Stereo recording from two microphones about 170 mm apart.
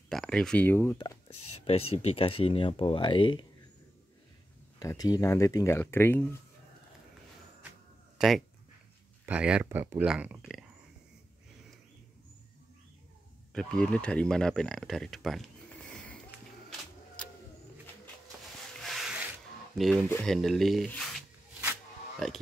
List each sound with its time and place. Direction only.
0.1 s speech: 5° left (ahead or behind)
1.7 s speech: 35° left (ahead or behind)
4.7 s speech: 20° left (ahead or behind)
8.2 s speech: 5° right (ahead or behind)
13.5 s speech: 5° left (ahead or behind)
15.9 s a sound: 10° left (ahead or behind)
18.8 s rub: centre (ahead or behind)
19.8 s speech: centre (ahead or behind)
22.2 s speech: centre (ahead or behind)